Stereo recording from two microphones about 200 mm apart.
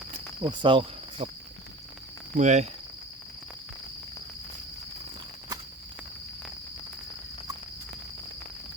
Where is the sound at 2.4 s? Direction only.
35° right (ahead or behind).